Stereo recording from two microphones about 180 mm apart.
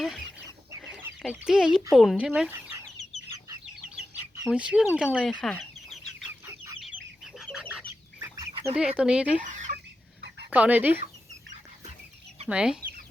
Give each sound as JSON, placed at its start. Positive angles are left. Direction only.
{"t": 0.0, "sound": "chicken", "side_deg": 0}
{"t": 1.3, "sound": "speech", "side_deg": -5}
{"t": 4.4, "sound": "speech", "side_deg": -5}
{"t": 5.0, "sound": "speech", "side_deg": 10}
{"t": 5.3, "sound": "chicken", "side_deg": 0}
{"t": 8.4, "sound": "duck", "side_deg": -25}
{"t": 9.0, "sound": "speech", "side_deg": -5}
{"t": 9.4, "sound": "chicken", "side_deg": -45}
{"t": 10.5, "sound": "speech", "side_deg": -10}
{"t": 12.5, "sound": "speech", "side_deg": -5}